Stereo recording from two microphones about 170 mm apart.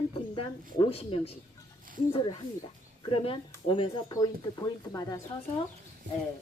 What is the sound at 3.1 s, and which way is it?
Speech, 35° left (ahead or behind).